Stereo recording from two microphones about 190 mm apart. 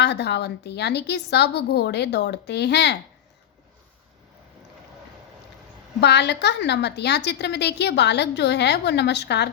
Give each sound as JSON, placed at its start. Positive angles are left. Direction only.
{"t": 0.0, "sound": "a woman's voice", "side_deg": 60}
{"t": 6.0, "sound": "a woman's voice", "side_deg": 60}